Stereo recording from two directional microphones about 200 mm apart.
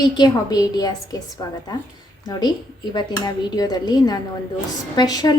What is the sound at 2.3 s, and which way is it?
A woman's voice, 20° left (ahead or behind).